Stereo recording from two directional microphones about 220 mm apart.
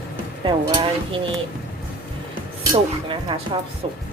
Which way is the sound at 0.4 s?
20° right (ahead or behind).